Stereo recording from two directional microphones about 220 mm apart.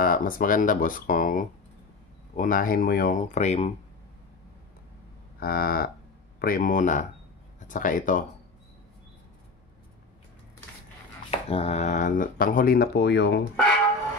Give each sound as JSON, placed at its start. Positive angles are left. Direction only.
{"t": 0.0, "sound": "speech", "side_deg": 40}
{"t": 5.4, "sound": "speech", "side_deg": 40}
{"t": 11.2, "sound": "speech", "side_deg": 25}